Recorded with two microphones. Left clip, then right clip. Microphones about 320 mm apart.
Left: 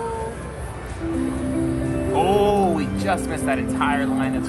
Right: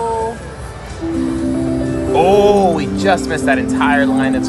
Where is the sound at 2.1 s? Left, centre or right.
Right.